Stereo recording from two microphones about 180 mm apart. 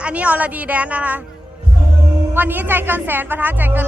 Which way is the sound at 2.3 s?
10° right (ahead or behind).